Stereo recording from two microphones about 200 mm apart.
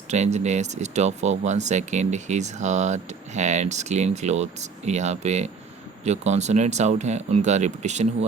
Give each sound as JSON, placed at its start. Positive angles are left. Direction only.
{"t": 0.1, "sound": "speech", "side_deg": -35}